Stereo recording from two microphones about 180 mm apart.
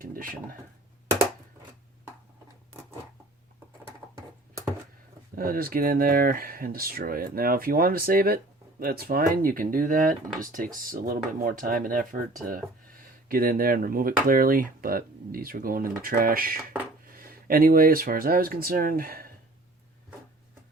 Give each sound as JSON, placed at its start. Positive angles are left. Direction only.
{"t": 0.0, "sound": "dishes", "side_deg": -50}
{"t": 5.3, "sound": "speech", "side_deg": -55}
{"t": 13.2, "sound": "speech", "side_deg": -55}